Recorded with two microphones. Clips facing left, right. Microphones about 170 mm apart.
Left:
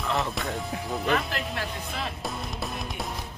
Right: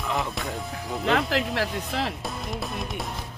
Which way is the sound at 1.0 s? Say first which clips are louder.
Right 5 dB; 85° right.